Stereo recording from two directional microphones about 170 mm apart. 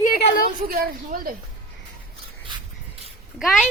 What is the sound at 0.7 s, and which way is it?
Speech, 60° right (ahead or behind).